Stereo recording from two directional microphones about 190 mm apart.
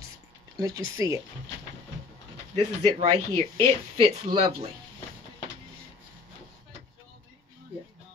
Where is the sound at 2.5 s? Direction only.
35° right (ahead or behind).